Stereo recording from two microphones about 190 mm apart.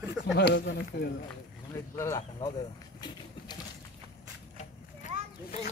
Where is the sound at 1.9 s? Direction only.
15° left (ahead or behind).